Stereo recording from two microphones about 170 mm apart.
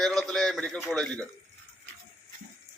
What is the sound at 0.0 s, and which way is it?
A man's voice, centre (ahead or behind).